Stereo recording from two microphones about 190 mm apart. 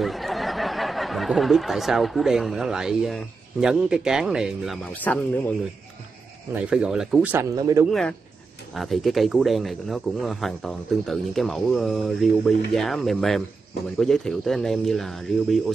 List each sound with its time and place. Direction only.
0.0 s speech: centre (ahead or behind)
4.9 s speech: 10° left (ahead or behind)
6.5 s speech: 5° right (ahead or behind)
7.5 s speech: 20° right (ahead or behind)
8.7 s speech: centre (ahead or behind)